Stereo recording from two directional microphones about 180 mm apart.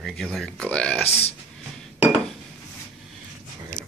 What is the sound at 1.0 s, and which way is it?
Speech, 35° left (ahead or behind).